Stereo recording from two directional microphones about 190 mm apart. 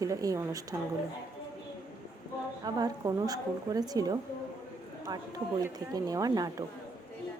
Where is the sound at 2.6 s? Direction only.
20° right (ahead or behind).